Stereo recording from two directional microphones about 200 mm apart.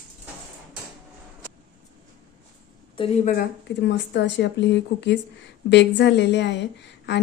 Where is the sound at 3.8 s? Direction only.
60° left (ahead or behind).